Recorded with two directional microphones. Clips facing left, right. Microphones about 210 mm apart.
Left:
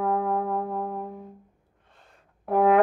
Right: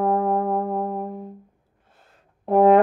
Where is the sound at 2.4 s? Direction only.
30° right (ahead or behind).